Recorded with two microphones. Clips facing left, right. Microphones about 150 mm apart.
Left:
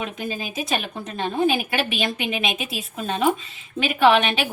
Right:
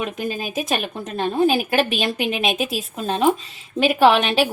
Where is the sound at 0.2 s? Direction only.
45° right (ahead or behind).